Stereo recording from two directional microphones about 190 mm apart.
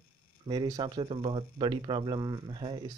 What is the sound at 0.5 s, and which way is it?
Speech, 20° right (ahead or behind).